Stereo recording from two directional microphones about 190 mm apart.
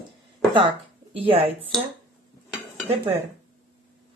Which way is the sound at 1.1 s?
30° right (ahead or behind).